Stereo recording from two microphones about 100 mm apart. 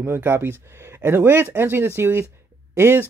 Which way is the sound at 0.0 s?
25° right (ahead or behind).